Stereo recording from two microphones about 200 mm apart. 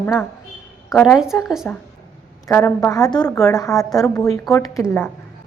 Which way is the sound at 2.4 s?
10° left (ahead or behind).